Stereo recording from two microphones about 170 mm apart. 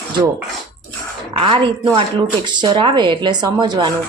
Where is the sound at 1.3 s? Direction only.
30° right (ahead or behind).